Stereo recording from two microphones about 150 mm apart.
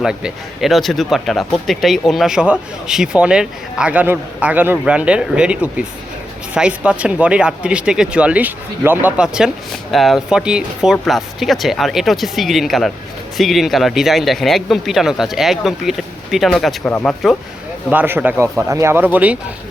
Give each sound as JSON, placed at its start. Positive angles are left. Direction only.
{"t": 0.0, "sound": "speech", "side_deg": -5}
{"t": 17.9, "sound": "speech", "side_deg": -15}